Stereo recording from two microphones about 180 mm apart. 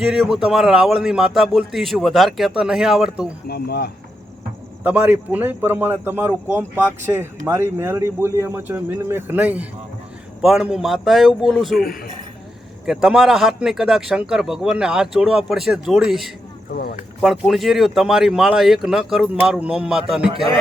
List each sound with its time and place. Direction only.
0.0 s a man's voice: 5° right (ahead or behind)
3.4 s speech: 60° left (ahead or behind)
4.8 s a man's voice: 10° right (ahead or behind)
12.8 s a man's voice: 5° right (ahead or behind)
16.7 s speech: 55° left (ahead or behind)
17.2 s a man's voice: centre (ahead or behind)